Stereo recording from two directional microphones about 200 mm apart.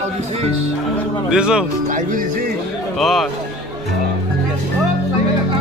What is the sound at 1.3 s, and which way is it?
Speech, 5° right (ahead or behind).